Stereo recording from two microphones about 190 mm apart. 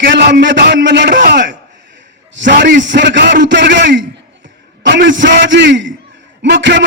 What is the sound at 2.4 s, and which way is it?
Speech, 45° right (ahead or behind).